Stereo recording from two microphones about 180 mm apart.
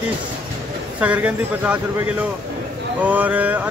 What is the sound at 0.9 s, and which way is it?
Speech, 10° right (ahead or behind).